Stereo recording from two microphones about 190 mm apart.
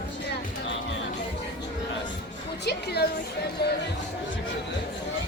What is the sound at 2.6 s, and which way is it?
Music, 60° left (ahead or behind).